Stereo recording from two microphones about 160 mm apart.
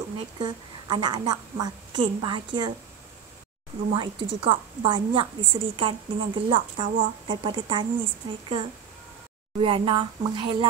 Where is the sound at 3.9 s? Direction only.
30° right (ahead or behind).